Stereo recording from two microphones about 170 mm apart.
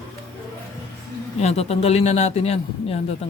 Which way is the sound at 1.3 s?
40° left (ahead or behind).